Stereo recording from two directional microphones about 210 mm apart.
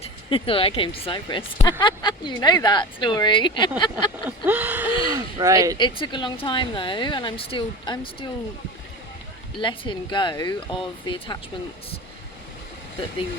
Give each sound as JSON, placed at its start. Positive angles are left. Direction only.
{"t": 0.0, "sound": "speech", "side_deg": 25}
{"t": 4.3, "sound": "speech", "side_deg": -5}
{"t": 5.7, "sound": "speech", "side_deg": 20}
{"t": 9.6, "sound": "speech", "side_deg": 25}